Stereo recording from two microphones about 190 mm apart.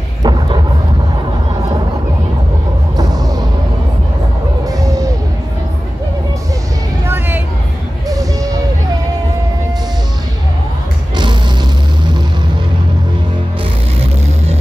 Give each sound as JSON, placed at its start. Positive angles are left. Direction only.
{"t": 0.2, "sound": "thunder", "side_deg": -25}
{"t": 3.0, "sound": "a sound", "side_deg": -20}
{"t": 4.6, "sound": "music", "side_deg": -15}
{"t": 7.1, "sound": "music", "side_deg": -10}